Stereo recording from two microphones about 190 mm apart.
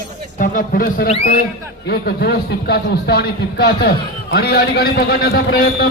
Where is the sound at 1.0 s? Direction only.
30° left (ahead or behind).